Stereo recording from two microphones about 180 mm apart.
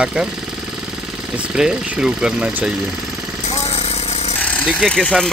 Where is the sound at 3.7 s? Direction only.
35° left (ahead or behind).